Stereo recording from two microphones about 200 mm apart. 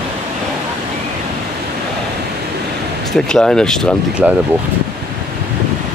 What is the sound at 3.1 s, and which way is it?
Speech, 5° left (ahead or behind).